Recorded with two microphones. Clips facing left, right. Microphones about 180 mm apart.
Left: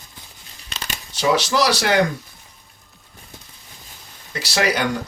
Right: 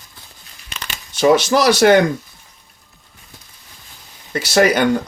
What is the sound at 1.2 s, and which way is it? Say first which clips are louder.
Speech: right 6 dB; 50° right (ahead or behind).